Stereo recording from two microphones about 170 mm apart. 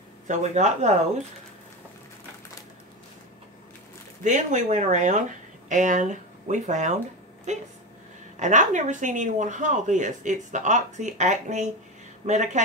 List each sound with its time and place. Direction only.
0.3 s speech: 45° right (ahead or behind)
4.2 s speech: 45° right (ahead or behind)